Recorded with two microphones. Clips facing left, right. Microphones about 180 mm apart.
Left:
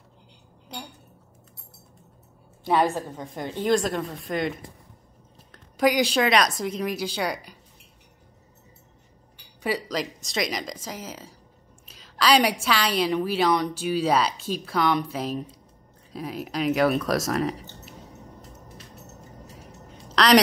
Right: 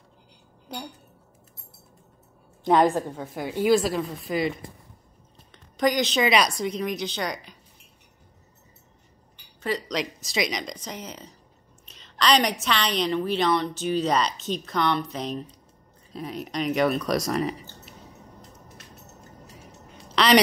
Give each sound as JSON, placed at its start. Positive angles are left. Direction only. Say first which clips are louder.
{"t": 2.6, "sound": "a woman's voice", "louder": "right 3 dB", "side_deg": -15}
{"t": 9.6, "sound": "a woman's voice", "louder": "left 1 dB", "side_deg": 10}
{"t": 11.9, "sound": "a sound", "louder": "left 1 dB", "side_deg": 5}
{"t": 12.6, "sound": "a woman's voice", "louder": "left 1 dB", "side_deg": 5}
{"t": 20.2, "sound": "quack", "louder": "left 1 dB", "side_deg": 0}